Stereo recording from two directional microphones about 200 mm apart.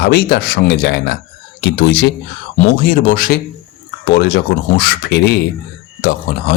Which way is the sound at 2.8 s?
40° left (ahead or behind).